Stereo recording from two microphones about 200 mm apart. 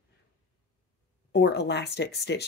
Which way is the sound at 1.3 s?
55° left (ahead or behind).